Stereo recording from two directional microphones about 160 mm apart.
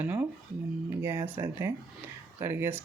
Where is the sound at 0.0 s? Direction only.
10° right (ahead or behind).